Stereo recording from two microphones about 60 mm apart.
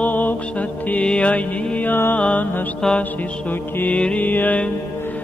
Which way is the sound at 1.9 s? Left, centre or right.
Left.